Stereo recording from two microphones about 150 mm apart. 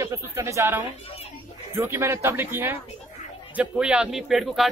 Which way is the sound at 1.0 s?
40° left (ahead or behind).